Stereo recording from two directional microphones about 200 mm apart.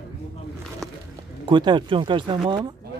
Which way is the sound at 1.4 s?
20° right (ahead or behind).